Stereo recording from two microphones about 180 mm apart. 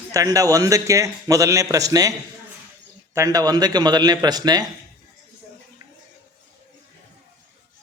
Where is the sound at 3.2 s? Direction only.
20° right (ahead or behind).